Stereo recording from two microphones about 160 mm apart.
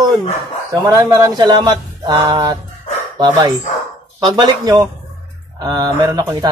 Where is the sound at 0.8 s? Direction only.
20° right (ahead or behind).